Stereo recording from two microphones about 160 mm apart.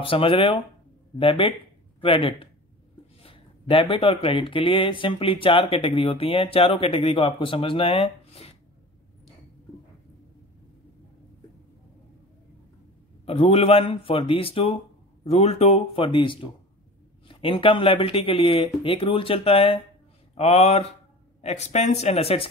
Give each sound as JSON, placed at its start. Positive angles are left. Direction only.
{"t": 0.0, "sound": "speech", "side_deg": 35}
{"t": 13.2, "sound": "speech", "side_deg": 35}